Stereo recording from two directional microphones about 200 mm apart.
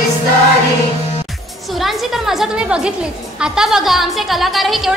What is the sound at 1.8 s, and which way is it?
Music, centre (ahead or behind).